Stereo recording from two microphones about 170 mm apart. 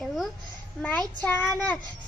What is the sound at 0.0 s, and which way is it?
Babbling, centre (ahead or behind).